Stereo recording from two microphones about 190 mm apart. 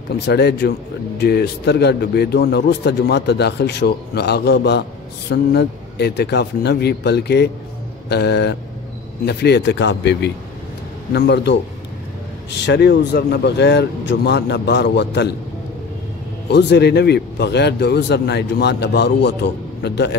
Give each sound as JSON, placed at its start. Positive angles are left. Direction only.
{"t": 0.2, "sound": "a man's voice", "side_deg": 60}
{"t": 16.4, "sound": "a man's voice", "side_deg": 60}